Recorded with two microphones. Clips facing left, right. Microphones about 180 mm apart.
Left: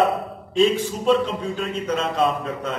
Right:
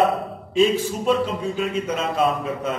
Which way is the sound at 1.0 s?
5° right (ahead or behind).